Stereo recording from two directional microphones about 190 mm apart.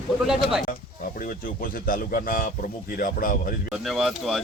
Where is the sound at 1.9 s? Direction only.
45° left (ahead or behind).